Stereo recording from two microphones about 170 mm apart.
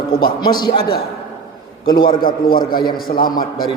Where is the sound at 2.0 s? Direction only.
55° left (ahead or behind).